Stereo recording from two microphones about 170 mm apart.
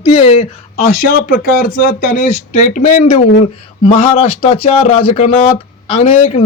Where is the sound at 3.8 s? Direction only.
35° left (ahead or behind).